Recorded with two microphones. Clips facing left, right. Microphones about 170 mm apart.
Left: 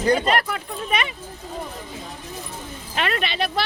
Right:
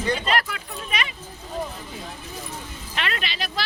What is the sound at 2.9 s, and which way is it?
Speech, 50° left (ahead or behind).